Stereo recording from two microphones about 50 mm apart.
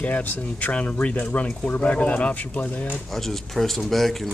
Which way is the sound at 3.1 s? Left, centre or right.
Centre.